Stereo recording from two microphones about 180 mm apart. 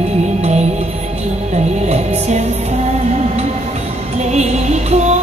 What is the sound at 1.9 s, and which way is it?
Music, 35° right (ahead or behind).